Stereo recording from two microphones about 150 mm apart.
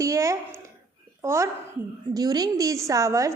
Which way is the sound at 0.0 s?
20° right (ahead or behind).